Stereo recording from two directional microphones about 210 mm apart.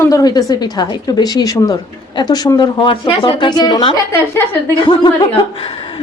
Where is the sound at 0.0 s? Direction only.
15° left (ahead or behind).